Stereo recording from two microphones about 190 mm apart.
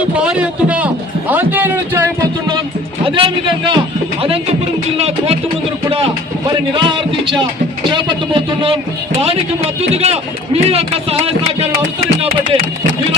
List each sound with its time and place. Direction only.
0.2 s a man's voice: 5° right (ahead or behind)
3.1 s a man's voice: 25° right (ahead or behind)
4.9 s speech: 35° right (ahead or behind)
6.7 s a man's voice: 25° right (ahead or behind)
9.9 s speech: 35° right (ahead or behind)